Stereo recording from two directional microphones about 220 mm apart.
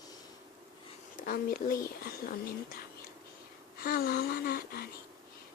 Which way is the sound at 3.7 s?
45° left (ahead or behind).